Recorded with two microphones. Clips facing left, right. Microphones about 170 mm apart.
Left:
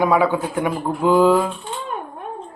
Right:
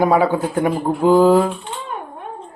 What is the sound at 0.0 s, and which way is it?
A woman's voice, 40° right (ahead or behind).